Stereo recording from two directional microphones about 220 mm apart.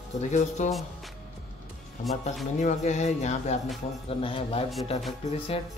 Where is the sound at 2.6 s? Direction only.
35° left (ahead or behind).